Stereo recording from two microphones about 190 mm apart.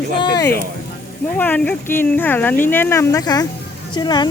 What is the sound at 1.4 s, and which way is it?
Speech, 10° left (ahead or behind).